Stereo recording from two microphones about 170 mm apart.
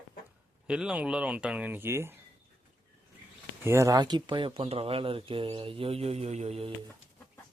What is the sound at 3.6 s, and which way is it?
Speech, 15° right (ahead or behind).